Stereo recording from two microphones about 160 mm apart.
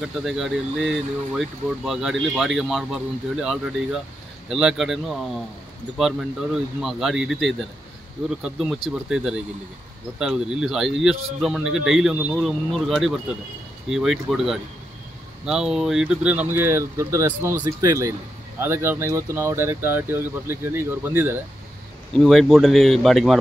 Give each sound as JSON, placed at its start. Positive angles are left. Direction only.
{"t": 0.0, "sound": "speech", "side_deg": 0}
{"t": 22.1, "sound": "speech", "side_deg": 0}